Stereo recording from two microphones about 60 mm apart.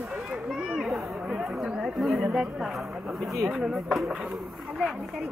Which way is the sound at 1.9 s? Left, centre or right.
Centre.